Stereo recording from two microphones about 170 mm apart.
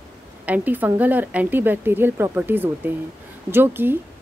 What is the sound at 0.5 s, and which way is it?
A woman's voice, 10° right (ahead or behind).